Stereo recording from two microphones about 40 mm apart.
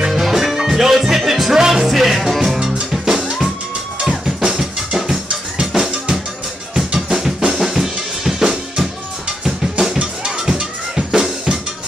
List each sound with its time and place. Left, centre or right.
0.1 s music: centre
4.4 s music: centre
6.9 s drum kit: centre
9.4 s drum: centre
9.9 s music: centre